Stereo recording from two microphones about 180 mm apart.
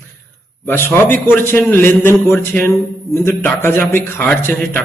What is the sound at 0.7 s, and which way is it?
A man's voice, 10° left (ahead or behind).